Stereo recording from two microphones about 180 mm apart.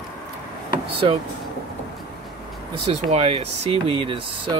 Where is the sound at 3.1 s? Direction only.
35° right (ahead or behind).